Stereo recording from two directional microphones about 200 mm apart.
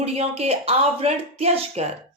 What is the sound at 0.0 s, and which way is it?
Speech, 30° right (ahead or behind).